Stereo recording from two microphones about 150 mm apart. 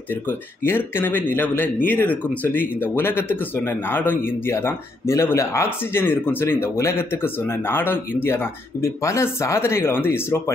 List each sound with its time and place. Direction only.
0.1 s speech: 15° left (ahead or behind)